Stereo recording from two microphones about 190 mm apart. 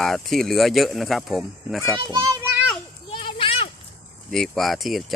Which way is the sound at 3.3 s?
30° left (ahead or behind).